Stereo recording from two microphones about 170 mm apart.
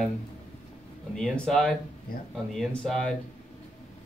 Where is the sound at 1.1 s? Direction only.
5° left (ahead or behind).